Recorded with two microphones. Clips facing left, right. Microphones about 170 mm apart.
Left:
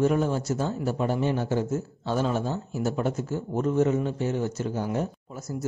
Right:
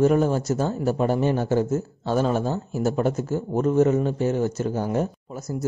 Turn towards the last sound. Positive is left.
turn(degrees=-45)  # may be behind; listen again after turning